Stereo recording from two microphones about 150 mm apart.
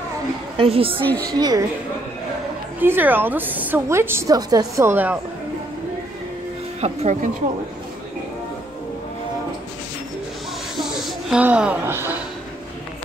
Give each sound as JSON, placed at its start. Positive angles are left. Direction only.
{"t": 0.6, "sound": "a woman's voice", "side_deg": -40}
{"t": 1.0, "sound": "speech", "side_deg": 10}
{"t": 1.3, "sound": "a woman's voice", "side_deg": -25}
{"t": 2.8, "sound": "a woman's voice", "side_deg": -15}
{"t": 6.8, "sound": "speech", "side_deg": -50}
{"t": 10.8, "sound": "a sound", "side_deg": 0}
{"t": 11.4, "sound": "a woman's voice", "side_deg": -10}